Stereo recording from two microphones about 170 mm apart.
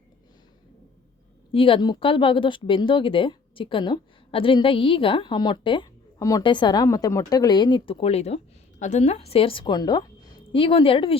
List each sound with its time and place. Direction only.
1.5 s a woman's voice: 30° left (ahead or behind)